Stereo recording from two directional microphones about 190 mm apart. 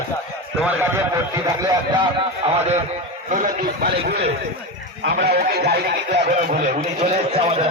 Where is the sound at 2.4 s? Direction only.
35° right (ahead or behind); by 6.0 s 60° right (ahead or behind).